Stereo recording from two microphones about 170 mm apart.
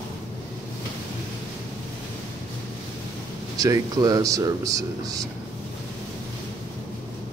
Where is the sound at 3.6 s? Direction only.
20° right (ahead or behind).